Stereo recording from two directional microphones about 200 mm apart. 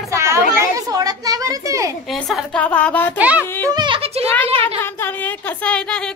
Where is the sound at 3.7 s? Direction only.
20° right (ahead or behind).